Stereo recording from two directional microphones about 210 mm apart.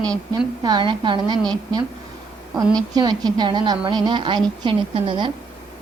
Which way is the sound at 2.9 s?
20° right (ahead or behind).